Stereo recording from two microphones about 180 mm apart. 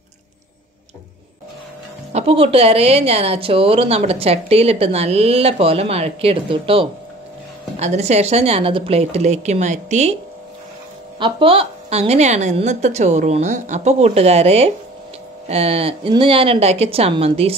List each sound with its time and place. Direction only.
2.1 s a woman's voice: 35° right (ahead or behind)
11.1 s a woman's voice: 30° right (ahead or behind)